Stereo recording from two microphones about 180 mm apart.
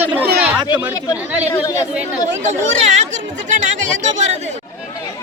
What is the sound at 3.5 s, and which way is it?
Speech, 45° right (ahead or behind).